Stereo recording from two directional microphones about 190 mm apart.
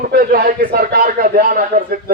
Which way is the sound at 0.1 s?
50° right (ahead or behind).